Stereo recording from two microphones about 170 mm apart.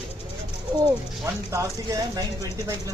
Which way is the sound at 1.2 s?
15° right (ahead or behind).